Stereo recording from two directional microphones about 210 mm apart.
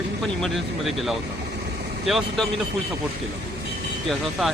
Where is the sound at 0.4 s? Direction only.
Centre (ahead or behind).